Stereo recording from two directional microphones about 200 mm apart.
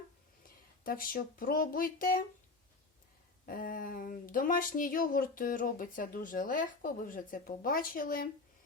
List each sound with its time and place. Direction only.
0.9 s speech: 45° left (ahead or behind)
3.4 s speech: 45° left (ahead or behind)